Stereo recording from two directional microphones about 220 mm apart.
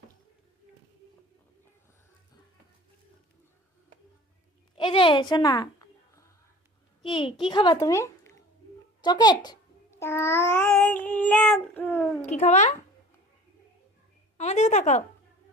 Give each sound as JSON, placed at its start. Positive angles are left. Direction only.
{"t": 4.7, "sound": "a sound", "side_deg": 25}
{"t": 7.0, "sound": "a child's voice", "side_deg": 20}
{"t": 10.0, "sound": "child singing", "side_deg": 10}
{"t": 12.2, "sound": "a woman's voice", "side_deg": 30}
{"t": 14.3, "sound": "a woman's voice", "side_deg": 30}